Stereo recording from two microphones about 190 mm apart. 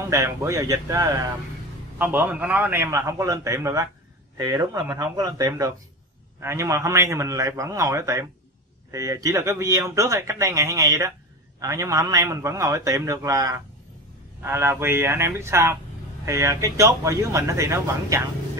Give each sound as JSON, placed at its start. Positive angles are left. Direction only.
{"t": 0.1, "sound": "speech", "side_deg": -15}